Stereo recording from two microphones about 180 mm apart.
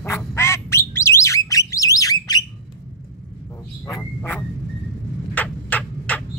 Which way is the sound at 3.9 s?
15° left (ahead or behind).